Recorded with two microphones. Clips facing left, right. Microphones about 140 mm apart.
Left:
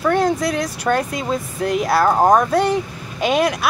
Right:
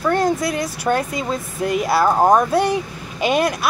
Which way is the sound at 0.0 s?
Centre (ahead or behind).